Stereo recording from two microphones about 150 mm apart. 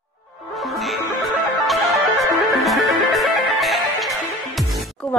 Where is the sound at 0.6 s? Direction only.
Centre (ahead or behind).